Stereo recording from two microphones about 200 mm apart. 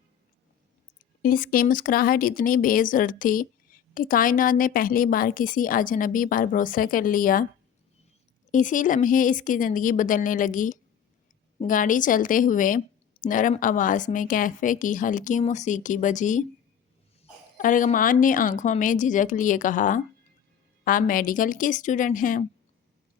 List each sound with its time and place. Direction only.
1.2 s speech: 45° left (ahead or behind)
8.4 s speech: 40° left (ahead or behind)
17.6 s speech: 40° left (ahead or behind)